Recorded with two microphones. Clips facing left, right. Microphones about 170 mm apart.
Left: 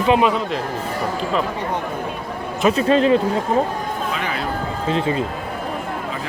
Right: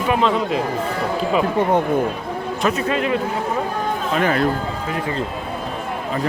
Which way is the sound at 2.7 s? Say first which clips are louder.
Left 5 dB; 30° left (ahead or behind).